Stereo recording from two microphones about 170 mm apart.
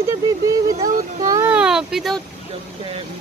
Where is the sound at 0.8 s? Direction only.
50° right (ahead or behind).